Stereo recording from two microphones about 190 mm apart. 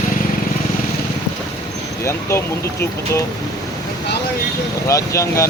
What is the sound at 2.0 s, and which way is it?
Speech, 15° left (ahead or behind).